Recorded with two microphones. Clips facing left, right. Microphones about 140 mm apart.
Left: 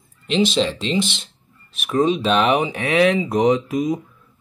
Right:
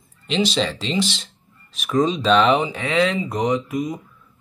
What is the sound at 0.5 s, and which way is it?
Speech, centre (ahead or behind).